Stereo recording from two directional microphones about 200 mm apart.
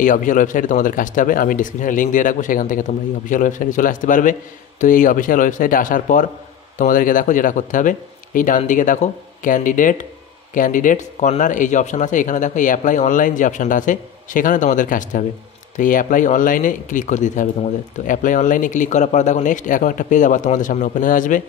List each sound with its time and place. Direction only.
0.0 s speech: 40° left (ahead or behind)